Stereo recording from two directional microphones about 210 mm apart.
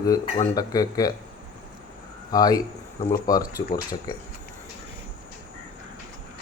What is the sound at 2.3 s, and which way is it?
Speech, 15° left (ahead or behind).